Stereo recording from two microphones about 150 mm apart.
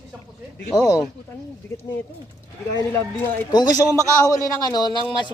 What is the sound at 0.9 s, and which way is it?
Speech, 20° left (ahead or behind).